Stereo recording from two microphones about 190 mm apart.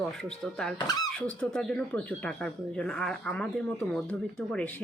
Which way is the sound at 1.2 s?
5° left (ahead or behind).